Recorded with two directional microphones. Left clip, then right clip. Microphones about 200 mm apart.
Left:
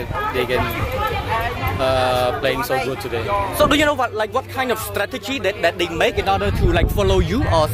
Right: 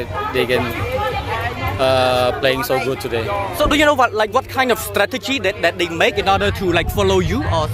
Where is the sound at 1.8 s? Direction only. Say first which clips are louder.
Right 3 dB; 55° right (ahead or behind).